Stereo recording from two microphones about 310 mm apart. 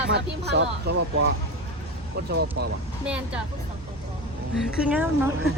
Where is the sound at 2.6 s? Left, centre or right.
Right.